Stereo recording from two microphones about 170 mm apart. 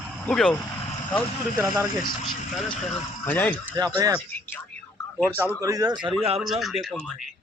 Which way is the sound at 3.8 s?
20° right (ahead or behind).